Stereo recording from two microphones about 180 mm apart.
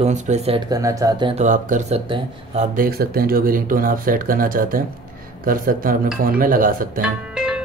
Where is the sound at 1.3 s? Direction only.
45° right (ahead or behind).